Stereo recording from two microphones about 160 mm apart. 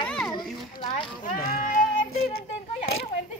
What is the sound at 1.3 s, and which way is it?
Speech, 65° left (ahead or behind).